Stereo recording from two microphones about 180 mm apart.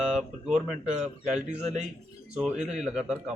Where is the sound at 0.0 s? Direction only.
Centre (ahead or behind).